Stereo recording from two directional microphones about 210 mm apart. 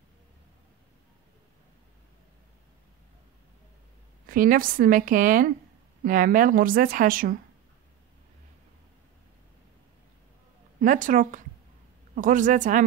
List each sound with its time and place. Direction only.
4.3 s a woman's voice: 40° right (ahead or behind)
10.8 s a woman's voice: 40° right (ahead or behind)